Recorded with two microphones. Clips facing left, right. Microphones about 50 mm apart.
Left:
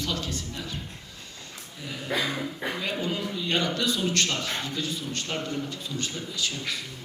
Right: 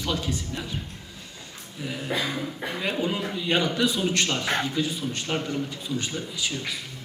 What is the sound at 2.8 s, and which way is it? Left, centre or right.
A man's voice, centre.